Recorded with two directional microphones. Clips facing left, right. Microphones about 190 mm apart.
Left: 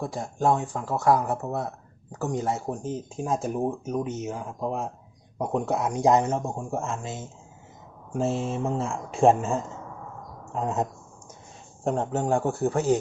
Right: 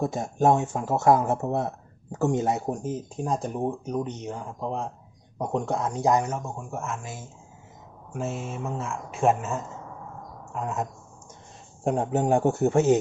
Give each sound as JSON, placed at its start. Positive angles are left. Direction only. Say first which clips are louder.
{"t": 0.0, "sound": "speech", "louder": "right 3 dB", "side_deg": -20}
{"t": 2.6, "sound": "speech", "louder": "right 1 dB", "side_deg": -5}
{"t": 6.1, "sound": "speech", "louder": "left 3 dB", "side_deg": 25}
{"t": 11.8, "sound": "speech", "louder": "right 2 dB", "side_deg": -10}